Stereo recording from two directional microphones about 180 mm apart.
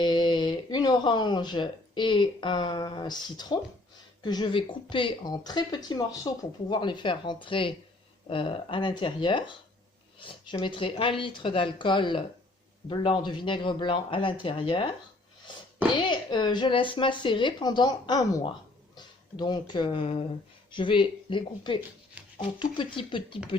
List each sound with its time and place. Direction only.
0.0 s speech: 25° left (ahead or behind)
16.0 s speech: 25° left (ahead or behind)